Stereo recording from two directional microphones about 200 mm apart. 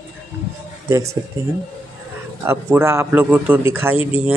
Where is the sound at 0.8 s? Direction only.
15° right (ahead or behind).